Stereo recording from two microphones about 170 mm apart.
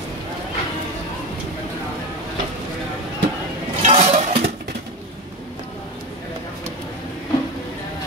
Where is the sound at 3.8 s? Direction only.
40° right (ahead or behind).